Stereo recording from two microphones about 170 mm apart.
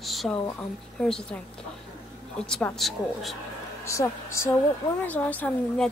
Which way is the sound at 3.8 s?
15° left (ahead or behind).